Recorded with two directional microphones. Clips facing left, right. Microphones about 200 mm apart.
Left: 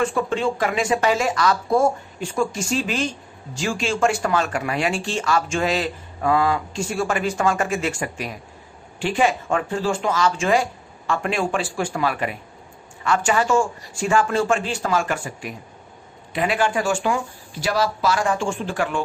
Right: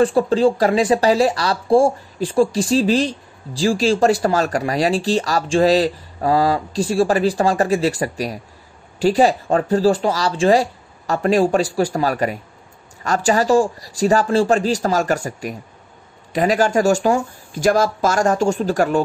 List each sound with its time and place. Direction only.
0.0 s speech: 35° right (ahead or behind)